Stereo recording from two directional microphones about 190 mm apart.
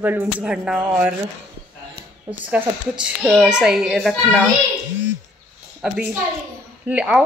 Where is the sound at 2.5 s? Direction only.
5° right (ahead or behind).